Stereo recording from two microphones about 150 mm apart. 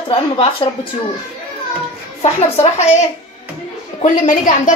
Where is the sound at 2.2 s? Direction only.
45° left (ahead or behind).